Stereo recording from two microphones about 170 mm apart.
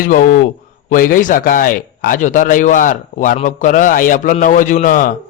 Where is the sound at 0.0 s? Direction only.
55° left (ahead or behind).